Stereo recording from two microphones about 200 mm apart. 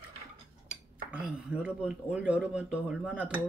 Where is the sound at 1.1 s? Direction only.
5° right (ahead or behind).